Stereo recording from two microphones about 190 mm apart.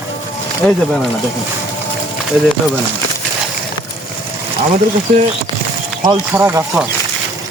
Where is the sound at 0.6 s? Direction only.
10° left (ahead or behind).